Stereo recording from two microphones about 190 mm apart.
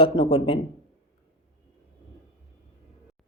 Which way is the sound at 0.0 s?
30° left (ahead or behind).